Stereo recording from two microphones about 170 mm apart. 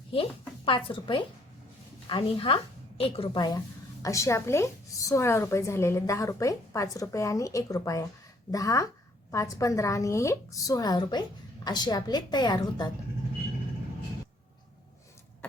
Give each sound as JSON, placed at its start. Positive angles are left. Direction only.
{"t": 0.1, "sound": "a woman's voice", "side_deg": 30}